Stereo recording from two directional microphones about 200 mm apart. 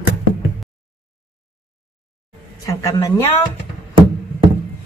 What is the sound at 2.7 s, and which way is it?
Speech, 15° left (ahead or behind).